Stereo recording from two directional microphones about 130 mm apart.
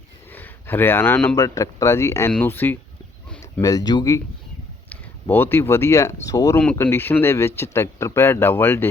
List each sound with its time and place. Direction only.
0.3 s speech: 15° left (ahead or behind)
1.4 s speech: 25° left (ahead or behind)
3.6 s speech: 30° left (ahead or behind)
5.3 s speech: 15° left (ahead or behind)